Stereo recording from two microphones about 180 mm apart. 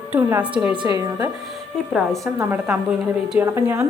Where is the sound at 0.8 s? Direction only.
20° right (ahead or behind).